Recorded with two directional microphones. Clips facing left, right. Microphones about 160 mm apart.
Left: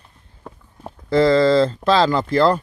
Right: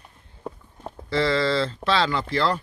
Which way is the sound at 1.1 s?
45° left (ahead or behind).